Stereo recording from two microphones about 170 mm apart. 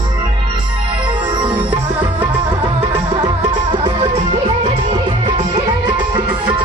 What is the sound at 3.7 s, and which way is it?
Music, 30° right (ahead or behind).